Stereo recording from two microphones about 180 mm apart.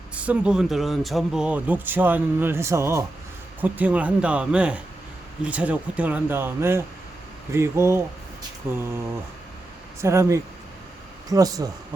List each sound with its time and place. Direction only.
0.1 s speech: 5° right (ahead or behind)
10.0 s speech: 15° right (ahead or behind)